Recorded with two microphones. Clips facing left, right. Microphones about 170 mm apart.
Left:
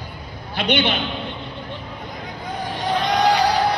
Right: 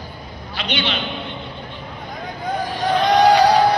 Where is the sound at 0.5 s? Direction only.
55° left (ahead or behind).